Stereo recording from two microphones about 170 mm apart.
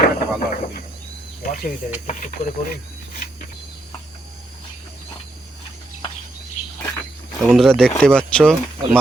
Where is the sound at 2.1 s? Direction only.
50° left (ahead or behind).